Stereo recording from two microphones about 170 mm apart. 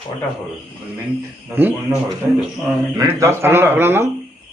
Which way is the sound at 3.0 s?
15° right (ahead or behind).